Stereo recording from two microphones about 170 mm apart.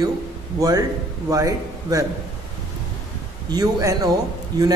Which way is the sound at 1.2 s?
20° right (ahead or behind).